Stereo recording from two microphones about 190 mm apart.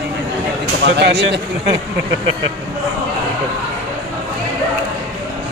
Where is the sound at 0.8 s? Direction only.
65° right (ahead or behind).